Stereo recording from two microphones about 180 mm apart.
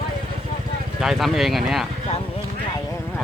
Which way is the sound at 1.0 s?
Centre (ahead or behind).